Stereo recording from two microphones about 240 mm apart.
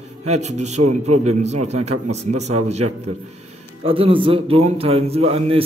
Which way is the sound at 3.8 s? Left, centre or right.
Right.